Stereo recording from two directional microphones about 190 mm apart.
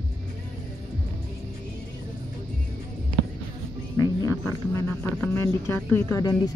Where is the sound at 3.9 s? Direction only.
20° left (ahead or behind).